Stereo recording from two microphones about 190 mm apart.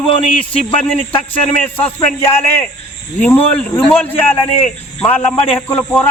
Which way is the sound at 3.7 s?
15° left (ahead or behind).